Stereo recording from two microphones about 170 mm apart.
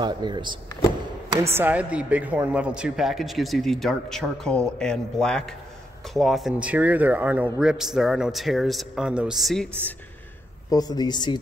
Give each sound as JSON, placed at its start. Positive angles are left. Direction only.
{"t": 0.0, "sound": "speech", "side_deg": -25}
{"t": 1.5, "sound": "a man's voice", "side_deg": -10}
{"t": 10.7, "sound": "speech", "side_deg": 20}